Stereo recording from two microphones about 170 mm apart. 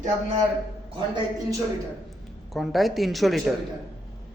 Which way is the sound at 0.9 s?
25° right (ahead or behind).